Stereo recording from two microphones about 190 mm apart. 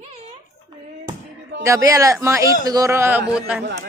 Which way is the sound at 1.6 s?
15° right (ahead or behind).